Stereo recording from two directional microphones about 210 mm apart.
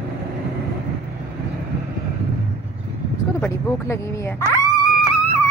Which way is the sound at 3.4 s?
10° left (ahead or behind).